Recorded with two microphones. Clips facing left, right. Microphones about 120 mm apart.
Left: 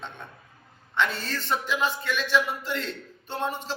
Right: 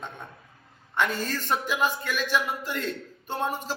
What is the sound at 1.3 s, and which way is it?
Speech, 10° right (ahead or behind).